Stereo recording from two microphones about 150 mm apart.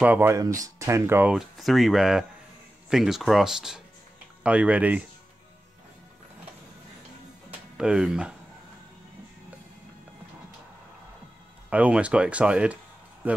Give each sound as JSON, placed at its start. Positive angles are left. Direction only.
{"t": 0.0, "sound": "speech", "side_deg": -10}
{"t": 0.4, "sound": "speech", "side_deg": -20}
{"t": 1.3, "sound": "speech", "side_deg": 0}
{"t": 7.7, "sound": "speech", "side_deg": -5}
{"t": 11.7, "sound": "speech", "side_deg": -10}